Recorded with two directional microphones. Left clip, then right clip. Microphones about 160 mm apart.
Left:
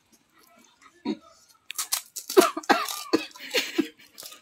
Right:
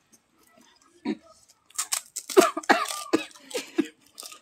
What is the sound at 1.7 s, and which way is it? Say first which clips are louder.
Scissors: left 1 dB; 10° left (ahead or behind).